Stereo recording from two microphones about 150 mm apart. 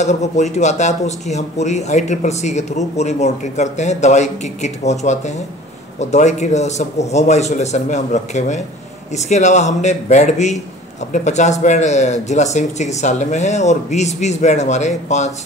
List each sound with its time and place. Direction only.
0.0 s speech: 50° left (ahead or behind)